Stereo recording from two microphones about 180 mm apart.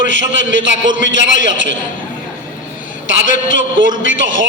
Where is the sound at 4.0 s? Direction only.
90° right.